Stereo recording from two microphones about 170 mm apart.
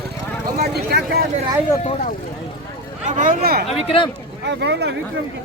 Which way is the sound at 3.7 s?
35° left (ahead or behind).